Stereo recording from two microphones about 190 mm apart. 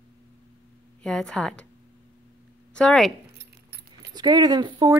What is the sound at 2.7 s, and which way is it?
Speech, 5° left (ahead or behind).